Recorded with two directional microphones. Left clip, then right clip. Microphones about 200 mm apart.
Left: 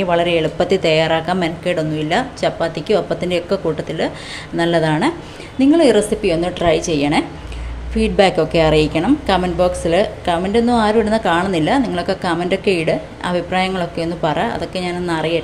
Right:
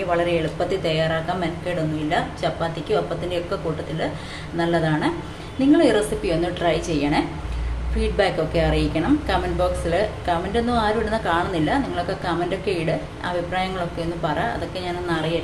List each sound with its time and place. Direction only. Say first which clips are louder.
0.1 s a woman's voice: left 5 dB; 45° left (ahead or behind)